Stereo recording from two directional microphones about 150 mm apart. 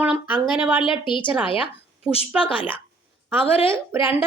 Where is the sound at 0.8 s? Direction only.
35° left (ahead or behind).